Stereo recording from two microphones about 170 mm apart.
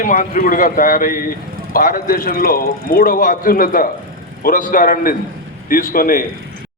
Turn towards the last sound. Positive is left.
turn(degrees=55)  # may be behind; listen again after turning